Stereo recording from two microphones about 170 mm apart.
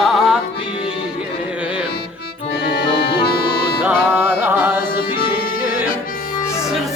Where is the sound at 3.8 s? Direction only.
10° right (ahead or behind).